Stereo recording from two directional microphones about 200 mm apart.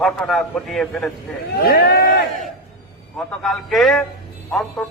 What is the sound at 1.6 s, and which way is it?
Speech, 50° left (ahead or behind).